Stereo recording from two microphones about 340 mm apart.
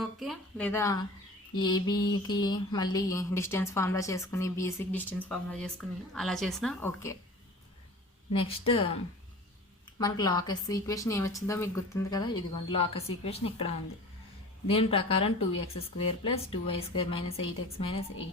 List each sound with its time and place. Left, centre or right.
0.0 s a woman's voice: centre
1.5 s mantra: centre
8.6 s mantra: centre
10.0 s mantra: centre
14.7 s mantra: centre